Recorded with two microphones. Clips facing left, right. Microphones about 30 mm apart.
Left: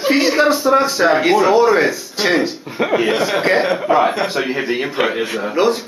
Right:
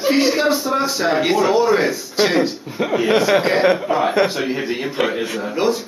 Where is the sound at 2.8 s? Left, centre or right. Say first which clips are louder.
Even; left.